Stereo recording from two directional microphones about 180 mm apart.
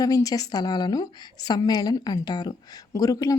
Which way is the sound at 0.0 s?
20° left (ahead or behind).